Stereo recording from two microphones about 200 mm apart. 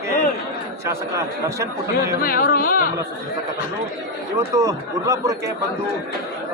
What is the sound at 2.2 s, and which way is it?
Speech, 45° left (ahead or behind).